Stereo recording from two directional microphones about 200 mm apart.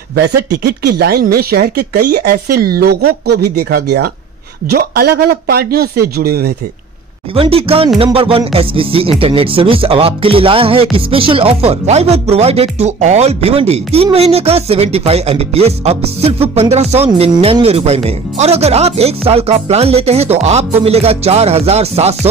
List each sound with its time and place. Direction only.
0.1 s speech: 50° right (ahead or behind)
7.3 s speech: 30° right (ahead or behind)